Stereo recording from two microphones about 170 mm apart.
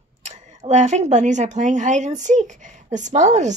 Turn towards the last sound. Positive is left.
turn(degrees=-45)  # may be behind; listen again after turning